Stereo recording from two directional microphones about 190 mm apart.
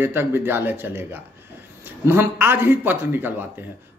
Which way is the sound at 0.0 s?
10° right (ahead or behind).